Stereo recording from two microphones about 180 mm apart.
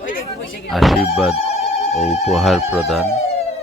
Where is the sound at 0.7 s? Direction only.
Centre (ahead or behind).